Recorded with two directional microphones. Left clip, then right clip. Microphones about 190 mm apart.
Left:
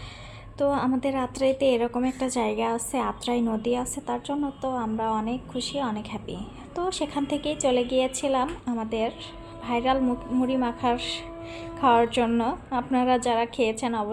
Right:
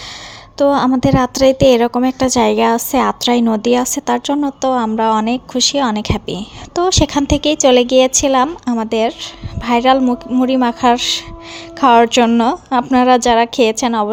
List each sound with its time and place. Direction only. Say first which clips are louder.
0.6 s a woman's voice: right 12 dB; 45° right (ahead or behind)